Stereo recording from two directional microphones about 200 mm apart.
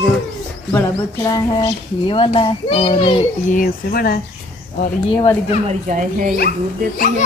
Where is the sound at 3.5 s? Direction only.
45° left (ahead or behind).